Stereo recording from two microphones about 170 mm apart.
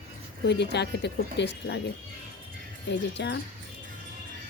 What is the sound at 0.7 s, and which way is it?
Speech, 80° left.